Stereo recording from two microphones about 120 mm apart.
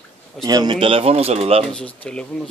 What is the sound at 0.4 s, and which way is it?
Speech, 35° right (ahead or behind).